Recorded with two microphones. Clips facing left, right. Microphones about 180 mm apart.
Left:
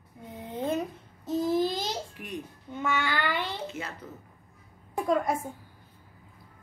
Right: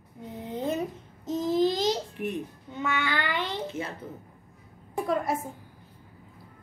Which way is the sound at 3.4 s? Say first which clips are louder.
Right 3 dB; 20° right (ahead or behind).